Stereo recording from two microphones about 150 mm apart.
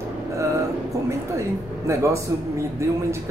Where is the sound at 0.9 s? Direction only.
20° right (ahead or behind).